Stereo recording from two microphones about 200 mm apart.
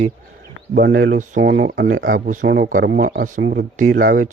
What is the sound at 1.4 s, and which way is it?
Speech, 60° right (ahead or behind).